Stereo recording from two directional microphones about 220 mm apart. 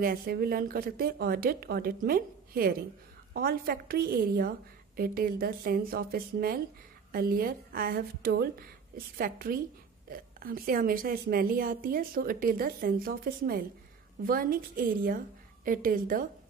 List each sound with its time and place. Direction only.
0.0 s a woman's voice: 45° right (ahead or behind)